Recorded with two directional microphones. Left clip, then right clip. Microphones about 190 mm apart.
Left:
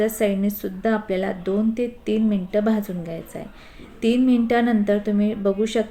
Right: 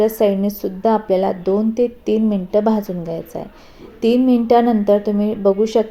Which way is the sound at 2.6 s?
15° left (ahead or behind).